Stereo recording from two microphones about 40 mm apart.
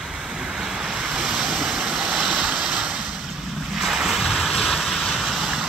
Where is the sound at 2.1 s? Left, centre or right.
Centre.